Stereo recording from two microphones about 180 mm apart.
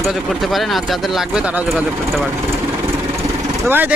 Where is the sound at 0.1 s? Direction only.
Centre (ahead or behind).